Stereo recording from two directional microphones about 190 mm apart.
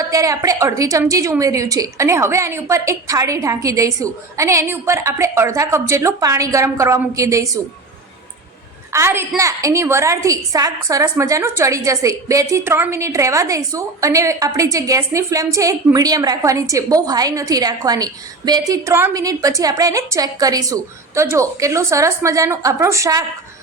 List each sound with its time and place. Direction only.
0.0 s a woman's voice: 15° right (ahead or behind)
8.9 s a woman's voice: 15° right (ahead or behind)